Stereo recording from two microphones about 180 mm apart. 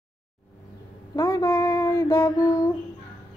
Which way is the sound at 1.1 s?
20° left (ahead or behind).